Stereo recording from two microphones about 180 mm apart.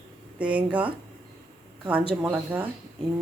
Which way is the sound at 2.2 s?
10° right (ahead or behind).